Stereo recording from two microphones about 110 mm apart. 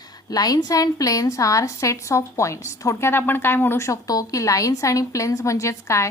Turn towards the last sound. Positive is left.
turn(degrees=25)  # may be behind; listen again after turning